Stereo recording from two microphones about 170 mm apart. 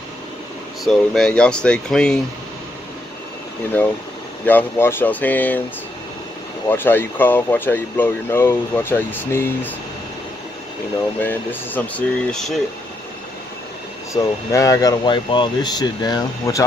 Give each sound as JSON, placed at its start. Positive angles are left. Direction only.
{"t": 0.8, "sound": "speech", "side_deg": 0}
{"t": 4.5, "sound": "speech", "side_deg": 10}
{"t": 6.7, "sound": "speech", "side_deg": 10}
{"t": 11.1, "sound": "speech", "side_deg": 10}
{"t": 14.1, "sound": "speech", "side_deg": 20}